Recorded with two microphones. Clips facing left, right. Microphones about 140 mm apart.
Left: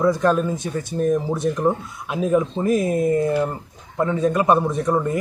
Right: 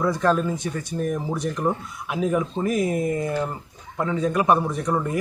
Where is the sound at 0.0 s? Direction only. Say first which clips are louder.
Left 3 dB; 20° left (ahead or behind).